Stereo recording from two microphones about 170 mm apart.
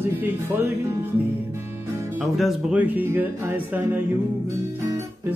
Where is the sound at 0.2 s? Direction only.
10° right (ahead or behind).